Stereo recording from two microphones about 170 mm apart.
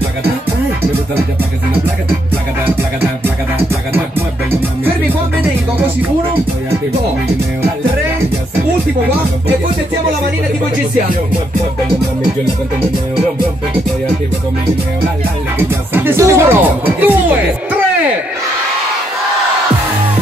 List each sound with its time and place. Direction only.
15.9 s speech: 15° right (ahead or behind)